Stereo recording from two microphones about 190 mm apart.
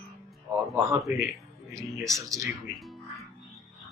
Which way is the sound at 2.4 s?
Centre (ahead or behind).